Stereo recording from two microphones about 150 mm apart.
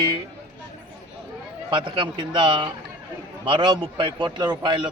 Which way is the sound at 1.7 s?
30° right (ahead or behind).